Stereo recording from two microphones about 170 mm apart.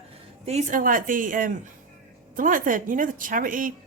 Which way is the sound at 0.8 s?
55° right (ahead or behind).